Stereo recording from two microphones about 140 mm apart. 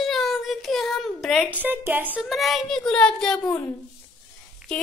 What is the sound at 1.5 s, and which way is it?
Speech, 15° right (ahead or behind).